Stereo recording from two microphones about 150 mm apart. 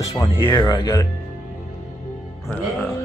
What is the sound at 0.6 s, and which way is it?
Speech, 25° left (ahead or behind).